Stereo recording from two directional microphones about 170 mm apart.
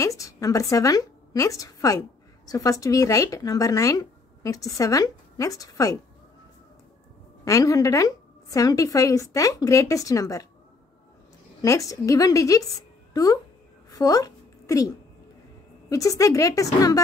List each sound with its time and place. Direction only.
0.0 s a woman's voice: 20° left (ahead or behind)
7.4 s speech: 20° left (ahead or behind)
11.6 s speech: 20° left (ahead or behind)
13.8 s a sound: 20° left (ahead or behind)
15.9 s speech: 20° left (ahead or behind)